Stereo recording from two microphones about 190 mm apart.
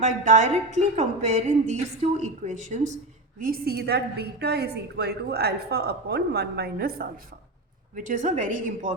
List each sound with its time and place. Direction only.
0.0 s a woman's voice: 40° right (ahead or behind); by 6.9 s 55° right (ahead or behind)
7.9 s a woman's voice: 40° right (ahead or behind)